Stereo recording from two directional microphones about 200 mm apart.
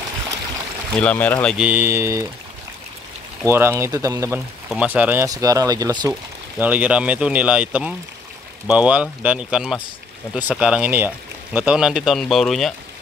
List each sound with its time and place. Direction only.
0.9 s speech: 5° left (ahead or behind); by 2.2 s 15° right (ahead or behind)
3.4 s speech: 10° right (ahead or behind)
6.6 s speech: 10° right (ahead or behind)